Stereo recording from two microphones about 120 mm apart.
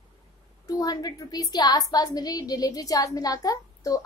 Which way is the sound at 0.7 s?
30° left (ahead or behind).